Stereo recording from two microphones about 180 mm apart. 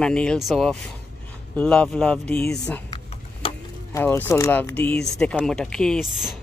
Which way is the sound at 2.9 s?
30° left (ahead or behind).